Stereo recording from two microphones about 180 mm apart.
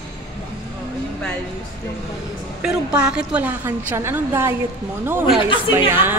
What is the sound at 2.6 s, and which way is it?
A woman's voice, 5° right (ahead or behind).